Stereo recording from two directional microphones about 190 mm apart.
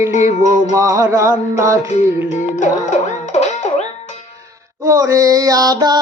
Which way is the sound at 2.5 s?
40° left (ahead or behind).